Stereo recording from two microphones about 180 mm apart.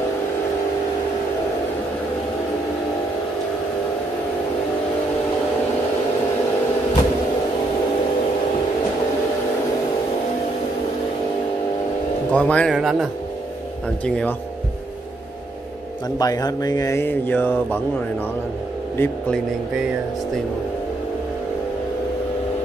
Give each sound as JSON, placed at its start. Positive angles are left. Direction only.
{"t": 12.3, "sound": "speech", "side_deg": 5}
{"t": 16.2, "sound": "speech", "side_deg": 20}
{"t": 18.9, "sound": "speech", "side_deg": 5}